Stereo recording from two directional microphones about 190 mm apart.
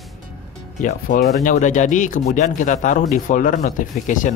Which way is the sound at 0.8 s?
45° left (ahead or behind).